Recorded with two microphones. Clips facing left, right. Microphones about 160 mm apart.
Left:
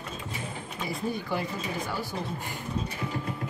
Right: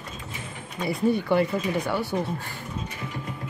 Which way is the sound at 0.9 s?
65° right (ahead or behind).